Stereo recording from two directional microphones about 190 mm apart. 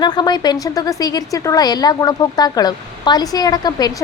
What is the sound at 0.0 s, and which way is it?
A woman's voice, 20° left (ahead or behind).